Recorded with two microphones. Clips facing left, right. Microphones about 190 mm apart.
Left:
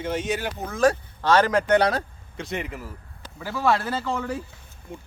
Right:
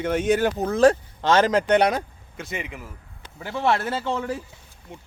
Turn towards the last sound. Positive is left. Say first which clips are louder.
# right 1 dB
turn(degrees=-25)  # may be behind; listen again after turning